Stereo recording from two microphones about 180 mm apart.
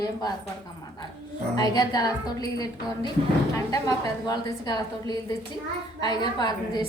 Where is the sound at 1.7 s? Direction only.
20° left (ahead or behind).